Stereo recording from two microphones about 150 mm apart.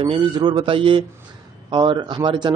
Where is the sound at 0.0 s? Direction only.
35° right (ahead or behind).